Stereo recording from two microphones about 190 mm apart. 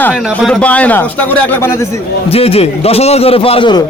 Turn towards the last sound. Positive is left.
turn(degrees=25)  # may be behind; listen again after turning